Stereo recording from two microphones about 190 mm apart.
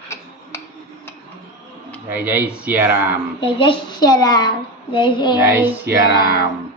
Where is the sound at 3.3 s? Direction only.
25° left (ahead or behind).